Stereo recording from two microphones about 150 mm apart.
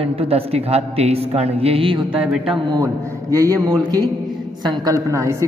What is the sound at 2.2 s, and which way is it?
Speech, 5° right (ahead or behind).